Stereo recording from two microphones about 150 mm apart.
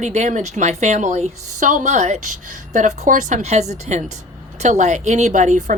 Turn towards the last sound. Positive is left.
turn(degrees=-55)  # may be behind; listen again after turning